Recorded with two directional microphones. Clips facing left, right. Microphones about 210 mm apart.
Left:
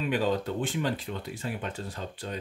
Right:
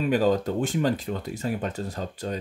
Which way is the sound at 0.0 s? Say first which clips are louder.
Right 5 dB; 40° right (ahead or behind).